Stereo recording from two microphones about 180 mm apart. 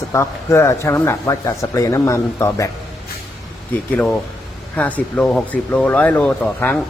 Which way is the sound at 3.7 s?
10° left (ahead or behind).